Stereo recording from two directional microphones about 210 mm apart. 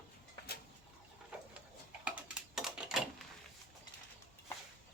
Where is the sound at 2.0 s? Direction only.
5° right (ahead or behind).